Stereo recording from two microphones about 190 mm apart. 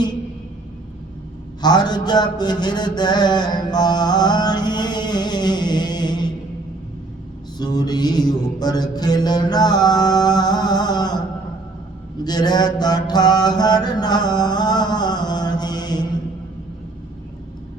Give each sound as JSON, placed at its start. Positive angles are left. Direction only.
{"t": 1.6, "sound": "mantra", "side_deg": 20}
{"t": 7.6, "sound": "mantra", "side_deg": 20}
{"t": 12.2, "sound": "mantra", "side_deg": 20}